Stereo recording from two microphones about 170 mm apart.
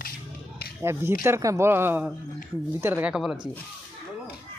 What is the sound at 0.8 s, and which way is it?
Speech, 15° right (ahead or behind).